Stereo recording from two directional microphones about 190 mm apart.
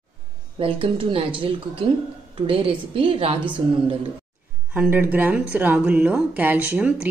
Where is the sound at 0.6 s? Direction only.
30° right (ahead or behind).